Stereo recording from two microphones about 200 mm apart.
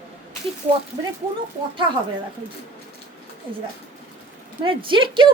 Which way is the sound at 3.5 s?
25° right (ahead or behind).